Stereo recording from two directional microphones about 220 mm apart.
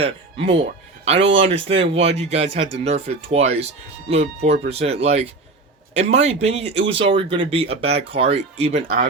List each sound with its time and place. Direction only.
0.0 s speech: 30° right (ahead or behind)